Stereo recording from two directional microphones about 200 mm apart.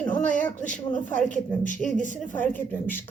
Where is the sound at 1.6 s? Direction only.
40° left (ahead or behind).